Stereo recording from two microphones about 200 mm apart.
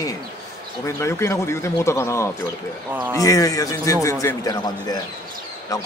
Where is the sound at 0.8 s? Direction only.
15° left (ahead or behind).